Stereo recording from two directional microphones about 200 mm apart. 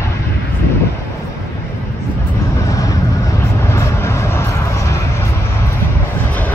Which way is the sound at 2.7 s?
15° left (ahead or behind).